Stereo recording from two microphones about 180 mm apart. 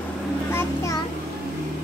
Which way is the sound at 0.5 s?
15° left (ahead or behind).